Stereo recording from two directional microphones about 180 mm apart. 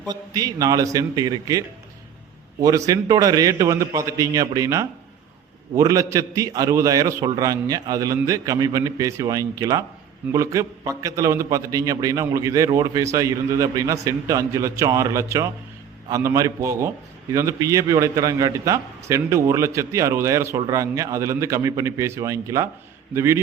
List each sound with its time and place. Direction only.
0.0 s a man's voice: 20° right (ahead or behind)